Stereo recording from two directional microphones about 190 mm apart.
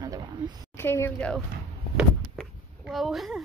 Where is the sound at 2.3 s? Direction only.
Centre (ahead or behind).